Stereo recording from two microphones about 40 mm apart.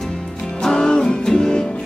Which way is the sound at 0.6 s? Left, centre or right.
Centre.